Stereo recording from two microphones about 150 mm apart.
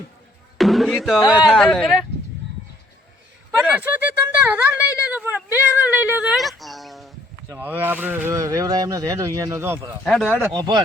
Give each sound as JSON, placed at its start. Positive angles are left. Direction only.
{"t": 0.6, "sound": "speech", "side_deg": 0}
{"t": 3.7, "sound": "speech", "side_deg": -10}
{"t": 7.6, "sound": "speech", "side_deg": -10}
{"t": 10.0, "sound": "speech", "side_deg": 5}
{"t": 10.5, "sound": "speech", "side_deg": -30}